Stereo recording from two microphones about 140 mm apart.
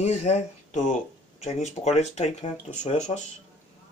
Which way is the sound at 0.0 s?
55° left (ahead or behind).